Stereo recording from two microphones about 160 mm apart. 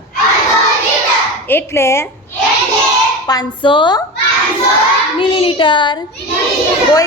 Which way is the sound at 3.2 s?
25° left (ahead or behind).